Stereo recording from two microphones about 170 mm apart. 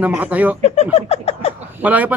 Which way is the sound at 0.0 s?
10° right (ahead or behind).